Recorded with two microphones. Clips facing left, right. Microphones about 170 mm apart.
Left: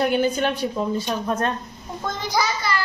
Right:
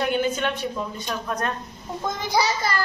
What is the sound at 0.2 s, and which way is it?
A woman's voice, 35° left (ahead or behind).